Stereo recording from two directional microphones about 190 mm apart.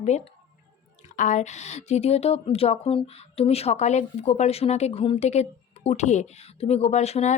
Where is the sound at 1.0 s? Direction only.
40° left (ahead or behind).